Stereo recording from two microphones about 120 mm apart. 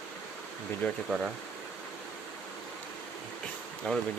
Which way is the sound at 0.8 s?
10° left (ahead or behind).